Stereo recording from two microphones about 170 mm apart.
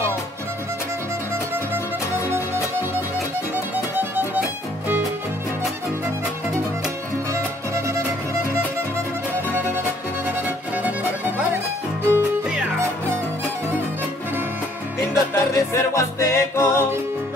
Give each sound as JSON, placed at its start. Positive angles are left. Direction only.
{"t": 3.5, "sound": "music", "side_deg": -10}
{"t": 7.3, "sound": "music", "side_deg": -15}
{"t": 12.1, "sound": "music", "side_deg": -5}
{"t": 15.3, "sound": "music", "side_deg": 15}